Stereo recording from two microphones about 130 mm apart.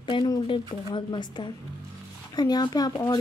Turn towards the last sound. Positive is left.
turn(degrees=30)  # may be behind; listen again after turning